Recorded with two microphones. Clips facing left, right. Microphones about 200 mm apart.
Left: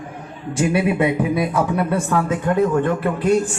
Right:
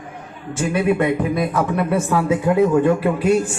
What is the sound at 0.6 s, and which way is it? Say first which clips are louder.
A man's voice: even; 10° left (ahead or behind).